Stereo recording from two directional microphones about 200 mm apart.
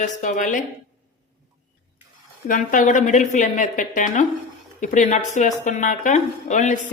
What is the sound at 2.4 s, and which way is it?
Speech, 40° left (ahead or behind).